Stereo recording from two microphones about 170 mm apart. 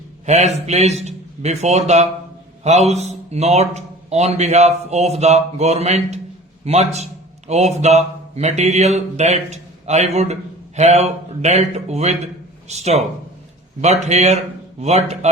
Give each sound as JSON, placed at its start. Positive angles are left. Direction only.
{"t": 0.3, "sound": "a man's voice", "side_deg": -40}